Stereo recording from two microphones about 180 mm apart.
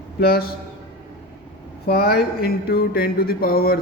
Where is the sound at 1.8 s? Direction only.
60° left (ahead or behind).